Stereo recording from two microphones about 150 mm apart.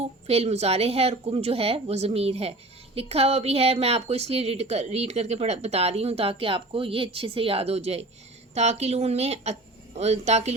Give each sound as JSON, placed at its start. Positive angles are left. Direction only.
{"t": 0.0, "sound": "a woman's voice", "side_deg": -45}